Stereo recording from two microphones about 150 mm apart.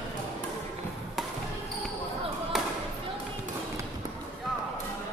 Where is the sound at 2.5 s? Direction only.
Centre (ahead or behind).